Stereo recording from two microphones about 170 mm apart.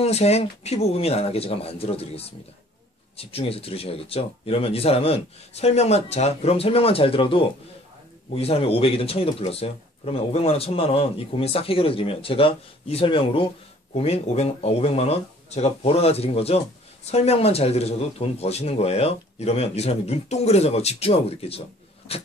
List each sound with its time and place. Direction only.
0.0 s speech: 40° left (ahead or behind)